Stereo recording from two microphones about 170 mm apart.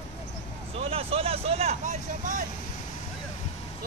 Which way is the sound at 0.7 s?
35° right (ahead or behind).